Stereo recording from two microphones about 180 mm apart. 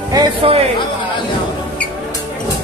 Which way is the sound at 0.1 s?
30° right (ahead or behind).